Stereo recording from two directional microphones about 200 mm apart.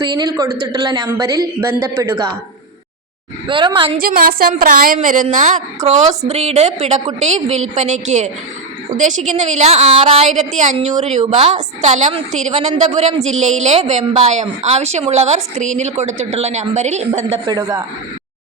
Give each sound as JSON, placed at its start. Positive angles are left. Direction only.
{"t": 0.1, "sound": "speech", "side_deg": -20}
{"t": 3.4, "sound": "speech", "side_deg": -25}
{"t": 4.0, "sound": "a woman's voice", "side_deg": -45}